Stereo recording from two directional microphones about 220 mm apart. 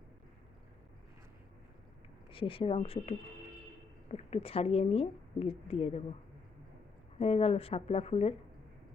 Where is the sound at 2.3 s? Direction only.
25° left (ahead or behind).